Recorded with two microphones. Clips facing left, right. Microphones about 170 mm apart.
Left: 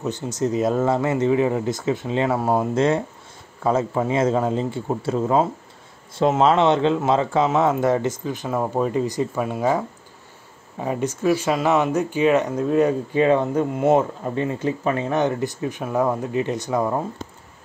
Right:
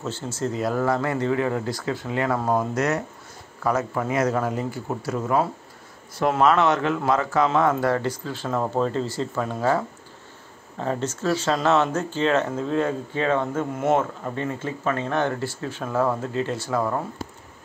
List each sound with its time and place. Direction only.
0.0 s speech: 15° left (ahead or behind)